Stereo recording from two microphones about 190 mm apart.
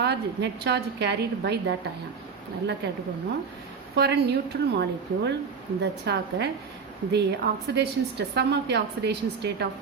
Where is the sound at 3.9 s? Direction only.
60° right (ahead or behind).